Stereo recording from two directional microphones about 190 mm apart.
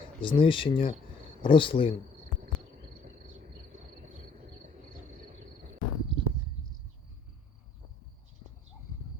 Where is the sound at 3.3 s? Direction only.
40° right (ahead or behind).